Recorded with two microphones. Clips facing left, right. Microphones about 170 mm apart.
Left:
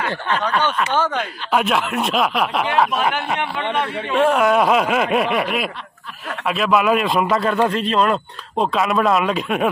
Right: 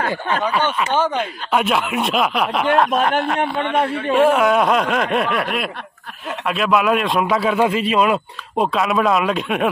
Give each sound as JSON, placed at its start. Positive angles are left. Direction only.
{"t": 0.1, "sound": "speech", "side_deg": -10}
{"t": 1.5, "sound": "speech", "side_deg": 0}
{"t": 4.1, "sound": "speech", "side_deg": -5}